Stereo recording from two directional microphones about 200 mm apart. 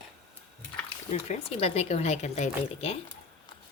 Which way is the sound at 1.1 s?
35° left (ahead or behind).